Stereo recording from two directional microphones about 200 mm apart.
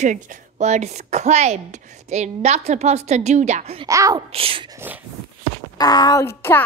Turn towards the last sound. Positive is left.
turn(degrees=15)  # may be behind; listen again after turning